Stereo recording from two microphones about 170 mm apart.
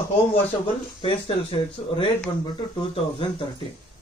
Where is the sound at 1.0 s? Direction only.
30° left (ahead or behind).